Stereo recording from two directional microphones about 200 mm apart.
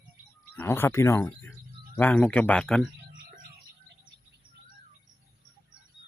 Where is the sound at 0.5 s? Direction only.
10° left (ahead or behind).